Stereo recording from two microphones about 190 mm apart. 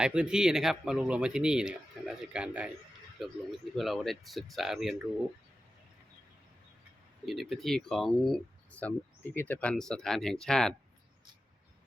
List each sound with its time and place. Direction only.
0.0 s speech: 5° right (ahead or behind)
7.3 s speech: centre (ahead or behind)